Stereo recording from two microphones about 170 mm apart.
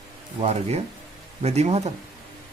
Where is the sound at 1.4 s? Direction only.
40° right (ahead or behind).